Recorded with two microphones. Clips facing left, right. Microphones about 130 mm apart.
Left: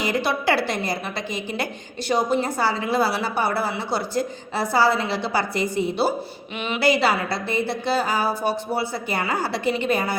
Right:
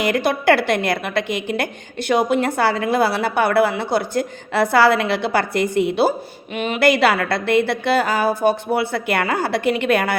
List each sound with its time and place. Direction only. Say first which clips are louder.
0.0 s a woman's voice: right 5 dB; 55° right (ahead or behind)